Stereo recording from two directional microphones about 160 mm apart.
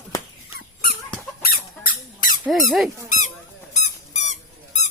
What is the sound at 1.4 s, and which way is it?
Squeak, 60° left (ahead or behind).